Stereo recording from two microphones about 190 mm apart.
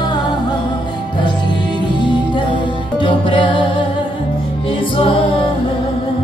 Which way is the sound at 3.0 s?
25° left (ahead or behind).